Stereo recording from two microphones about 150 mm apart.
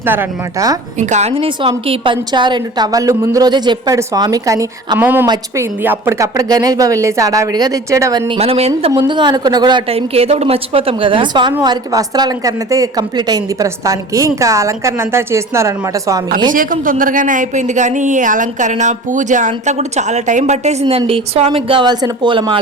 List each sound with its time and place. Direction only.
0.0 s a woman's voice: 15° right (ahead or behind)
0.9 s a woman's voice: 50° right (ahead or behind); by 5.6 s 25° right (ahead or behind)
5.8 s a woman's voice: 15° right (ahead or behind)
8.3 s speech: 40° right (ahead or behind)
9.0 s a woman's voice: 30° right (ahead or behind)
16.5 s speech: 65° right (ahead or behind)
21.1 s speech: 40° right (ahead or behind)